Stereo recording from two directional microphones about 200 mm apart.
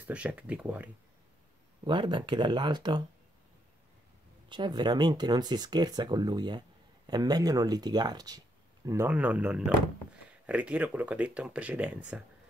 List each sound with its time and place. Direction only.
0.0 s speech: 5° right (ahead or behind)
1.9 s speech: 25° right (ahead or behind)
4.5 s speech: 20° right (ahead or behind); by 12.0 s 5° right (ahead or behind)